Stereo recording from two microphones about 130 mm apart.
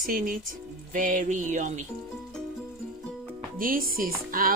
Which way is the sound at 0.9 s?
85° right.